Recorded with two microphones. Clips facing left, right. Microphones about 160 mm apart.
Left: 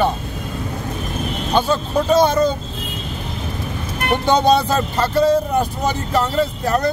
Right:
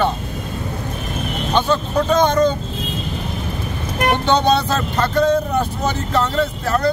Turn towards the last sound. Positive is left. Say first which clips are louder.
# left 1 dB
turn(degrees=20)  # may be behind; listen again after turning